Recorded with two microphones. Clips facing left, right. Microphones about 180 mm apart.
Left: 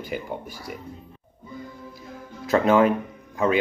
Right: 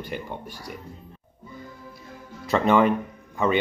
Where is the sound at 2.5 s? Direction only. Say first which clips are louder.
Left 1 dB; centre (ahead or behind).